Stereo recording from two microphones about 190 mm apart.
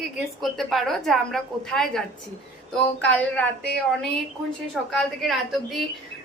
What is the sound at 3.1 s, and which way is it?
Speech, 5° left (ahead or behind).